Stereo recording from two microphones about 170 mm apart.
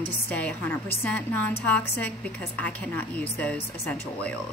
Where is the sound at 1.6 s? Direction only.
10° left (ahead or behind).